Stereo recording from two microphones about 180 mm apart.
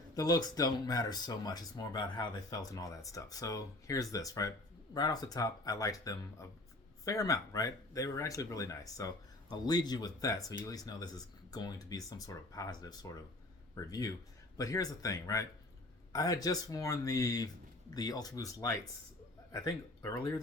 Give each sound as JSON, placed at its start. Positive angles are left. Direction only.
{"t": 0.1, "sound": "speech", "side_deg": 20}
{"t": 14.6, "sound": "speech", "side_deg": 20}